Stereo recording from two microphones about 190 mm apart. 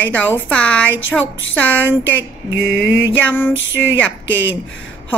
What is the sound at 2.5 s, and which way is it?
Mantra, 60° right (ahead or behind).